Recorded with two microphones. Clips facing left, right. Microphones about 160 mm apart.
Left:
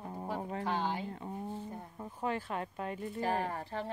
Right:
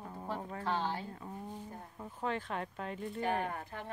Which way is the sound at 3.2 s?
35° left (ahead or behind).